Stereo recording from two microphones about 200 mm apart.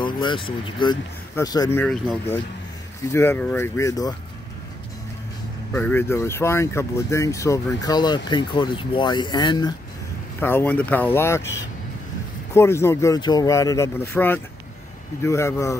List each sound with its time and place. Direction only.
0.0 s speech: 25° left (ahead or behind)
3.1 s speech: 10° left (ahead or behind)
5.7 s speech: 10° left (ahead or behind)
10.4 s speech: 10° left (ahead or behind)
12.5 s speech: 15° left (ahead or behind)